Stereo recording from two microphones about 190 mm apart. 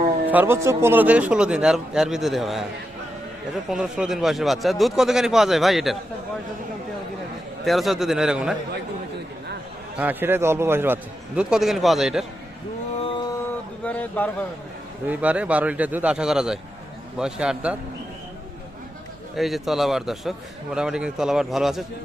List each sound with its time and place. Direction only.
0.3 s a man's voice: 10° right (ahead or behind)
3.7 s a man's voice: 5° right (ahead or behind)
7.6 s a man's voice: centre (ahead or behind)
10.0 s a man's voice: 10° right (ahead or behind)
13.0 s a sound: 25° left (ahead or behind)
13.8 s a sound: 10° left (ahead or behind)
15.0 s a man's voice: 10° right (ahead or behind)
19.4 s a man's voice: centre (ahead or behind)